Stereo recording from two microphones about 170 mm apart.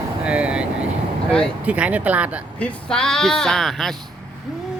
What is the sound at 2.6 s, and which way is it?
Speech, 5° left (ahead or behind).